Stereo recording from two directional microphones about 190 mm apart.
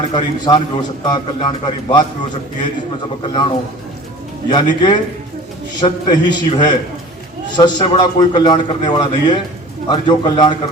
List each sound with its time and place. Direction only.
0.1 s a man's voice: 25° left (ahead or behind)
4.5 s a man's voice: 25° left (ahead or behind)